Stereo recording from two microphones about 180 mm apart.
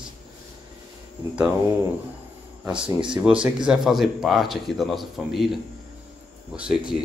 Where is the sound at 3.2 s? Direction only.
5° right (ahead or behind).